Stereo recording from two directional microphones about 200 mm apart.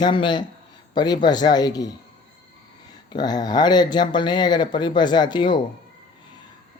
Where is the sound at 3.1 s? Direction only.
20° left (ahead or behind).